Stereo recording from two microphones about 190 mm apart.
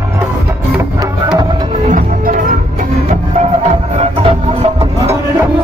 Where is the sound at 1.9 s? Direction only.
45° right (ahead or behind).